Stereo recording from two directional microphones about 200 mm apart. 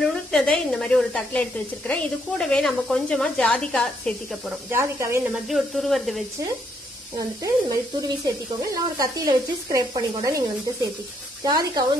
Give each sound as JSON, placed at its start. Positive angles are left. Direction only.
{"t": 0.0, "sound": "speech", "side_deg": 0}
{"t": 4.6, "sound": "speech", "side_deg": -10}
{"t": 5.5, "sound": "speech", "side_deg": 0}
{"t": 8.3, "sound": "speech", "side_deg": -15}